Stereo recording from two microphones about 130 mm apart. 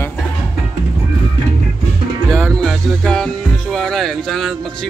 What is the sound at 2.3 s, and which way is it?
Music, 5° left (ahead or behind).